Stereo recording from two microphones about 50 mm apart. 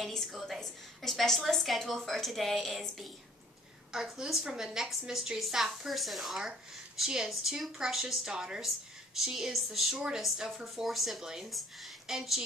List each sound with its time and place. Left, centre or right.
0.0 s a woman's voice: centre
3.9 s a woman's voice: centre
9.9 s a woman's voice: centre